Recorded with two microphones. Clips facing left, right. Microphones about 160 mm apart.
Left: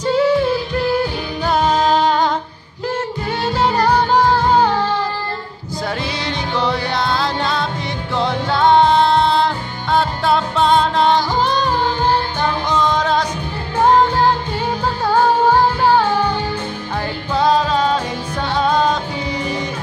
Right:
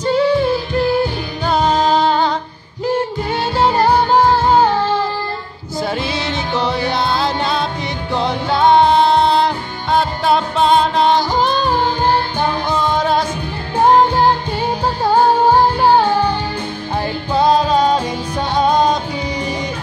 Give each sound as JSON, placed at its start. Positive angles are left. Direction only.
{"t": 0.0, "sound": "music", "side_deg": 5}
{"t": 1.5, "sound": "music", "side_deg": 0}
{"t": 3.5, "sound": "music", "side_deg": -25}
{"t": 6.5, "sound": "music", "side_deg": -20}
{"t": 9.9, "sound": "music", "side_deg": -20}
{"t": 12.4, "sound": "music", "side_deg": -10}
{"t": 17.3, "sound": "music", "side_deg": -15}